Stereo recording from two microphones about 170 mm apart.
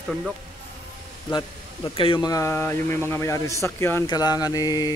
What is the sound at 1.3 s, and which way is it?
Speech, 25° left (ahead or behind).